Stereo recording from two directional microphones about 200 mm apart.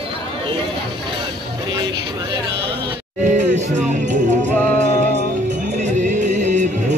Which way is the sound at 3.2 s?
35° right (ahead or behind).